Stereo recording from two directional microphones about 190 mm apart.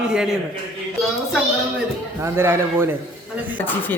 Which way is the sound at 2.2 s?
15° right (ahead or behind).